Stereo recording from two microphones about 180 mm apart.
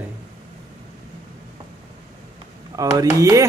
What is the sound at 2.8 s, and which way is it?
Speech, 20° right (ahead or behind).